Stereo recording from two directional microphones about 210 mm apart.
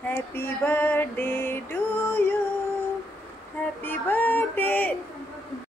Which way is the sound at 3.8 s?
10° left (ahead or behind).